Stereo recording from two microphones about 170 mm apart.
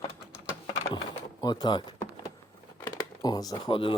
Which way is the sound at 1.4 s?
25° left (ahead or behind).